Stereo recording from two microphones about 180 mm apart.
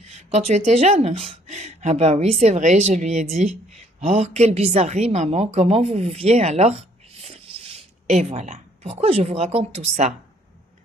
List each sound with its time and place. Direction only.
0.0 s a woman's voice: 40° right (ahead or behind)